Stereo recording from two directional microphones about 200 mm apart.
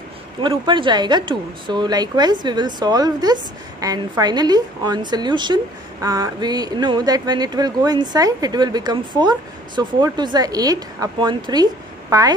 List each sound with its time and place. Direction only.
0.4 s speech: 25° right (ahead or behind)